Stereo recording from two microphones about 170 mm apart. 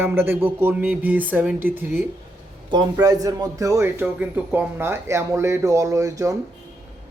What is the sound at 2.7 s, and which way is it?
A man's voice, 20° right (ahead or behind).